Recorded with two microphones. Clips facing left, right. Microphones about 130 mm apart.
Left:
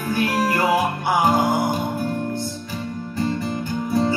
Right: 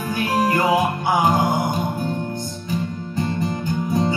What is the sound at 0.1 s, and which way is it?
Music, 20° right (ahead or behind).